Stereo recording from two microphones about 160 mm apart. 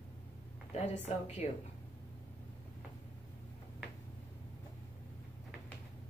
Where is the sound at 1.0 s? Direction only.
45° left (ahead or behind).